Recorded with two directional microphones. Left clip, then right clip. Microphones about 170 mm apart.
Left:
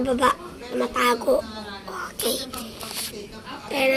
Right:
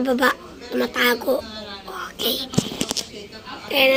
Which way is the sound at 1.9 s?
10° right (ahead or behind).